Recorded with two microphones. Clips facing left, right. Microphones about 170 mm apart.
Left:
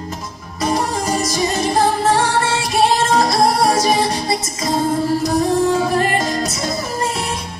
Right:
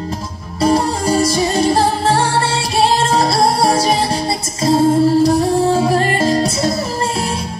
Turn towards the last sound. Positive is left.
turn(degrees=-30)  # may be behind; listen again after turning